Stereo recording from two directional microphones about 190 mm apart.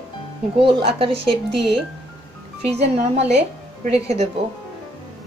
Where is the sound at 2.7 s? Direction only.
35° right (ahead or behind).